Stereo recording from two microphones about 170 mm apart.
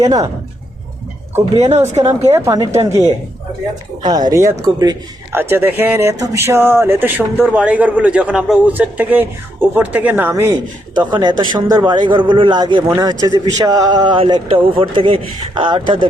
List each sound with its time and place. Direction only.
0.0 s speech: 20° right (ahead or behind)
1.7 s speech: 40° right (ahead or behind)
2.3 s a man's voice: 15° right (ahead or behind)
4.0 s a man's voice: 25° right (ahead or behind)